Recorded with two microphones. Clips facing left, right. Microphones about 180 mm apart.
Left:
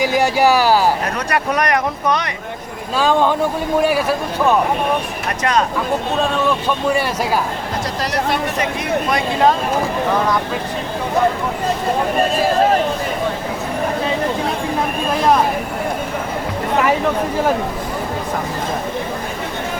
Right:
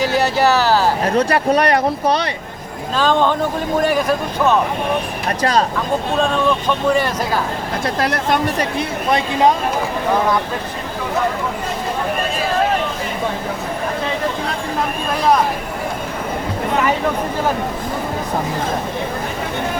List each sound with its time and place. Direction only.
0.0 s speech: 15° left (ahead or behind)
1.0 s speech: 30° right (ahead or behind)
3.0 s speech: 10° left (ahead or behind)
5.4 s speech: 35° right (ahead or behind)
6.8 s speech: 10° left (ahead or behind)
7.9 s speech: 55° right (ahead or behind)
9.1 s speech: 15° right (ahead or behind)